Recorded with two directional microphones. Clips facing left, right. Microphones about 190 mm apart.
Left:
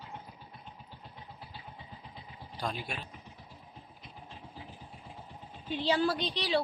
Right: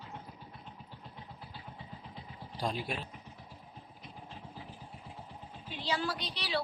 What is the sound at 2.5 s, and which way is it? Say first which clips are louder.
Speech: right 2 dB; 35° right (ahead or behind).